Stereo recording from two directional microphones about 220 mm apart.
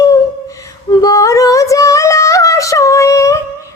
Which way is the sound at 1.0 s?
15° left (ahead or behind).